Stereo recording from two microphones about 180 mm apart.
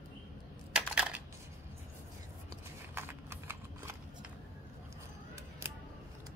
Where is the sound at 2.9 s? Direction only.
15° right (ahead or behind).